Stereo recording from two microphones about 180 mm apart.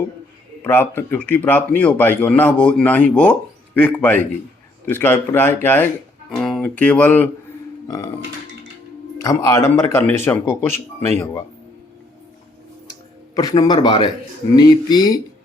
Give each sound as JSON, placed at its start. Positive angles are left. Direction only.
{"t": 0.6, "sound": "speech", "side_deg": 10}
{"t": 7.9, "sound": "speech", "side_deg": 20}
{"t": 9.1, "sound": "speech", "side_deg": 20}
{"t": 12.9, "sound": "a sound", "side_deg": 20}
{"t": 14.5, "sound": "speech", "side_deg": 20}